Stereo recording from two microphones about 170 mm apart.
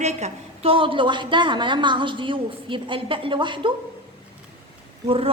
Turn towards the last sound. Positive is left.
turn(degrees=-35)  # may be behind; listen again after turning